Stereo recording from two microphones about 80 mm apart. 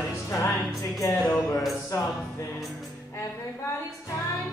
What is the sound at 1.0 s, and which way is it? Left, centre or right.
Music, left.